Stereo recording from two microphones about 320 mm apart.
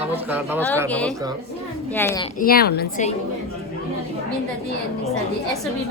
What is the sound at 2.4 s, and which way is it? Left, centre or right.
Speech, left.